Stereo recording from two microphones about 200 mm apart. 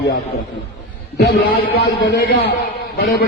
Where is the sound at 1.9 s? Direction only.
60° left (ahead or behind).